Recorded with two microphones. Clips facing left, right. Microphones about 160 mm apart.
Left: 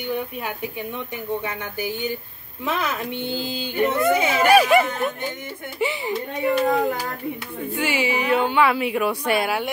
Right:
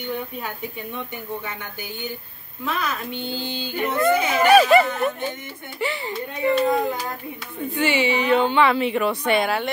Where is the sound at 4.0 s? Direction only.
5° left (ahead or behind).